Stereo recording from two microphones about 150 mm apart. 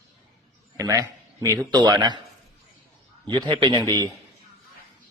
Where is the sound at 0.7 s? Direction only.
20° right (ahead or behind).